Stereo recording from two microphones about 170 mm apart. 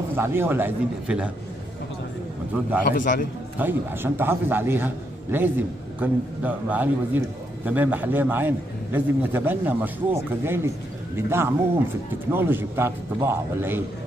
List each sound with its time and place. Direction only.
0.1 s a man's voice: 15° right (ahead or behind)
2.9 s a man's voice: 50° left (ahead or behind)
3.5 s a man's voice: 10° right (ahead or behind)